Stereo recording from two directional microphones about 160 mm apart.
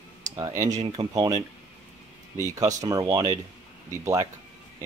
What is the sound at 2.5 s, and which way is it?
Speech, 20° right (ahead or behind).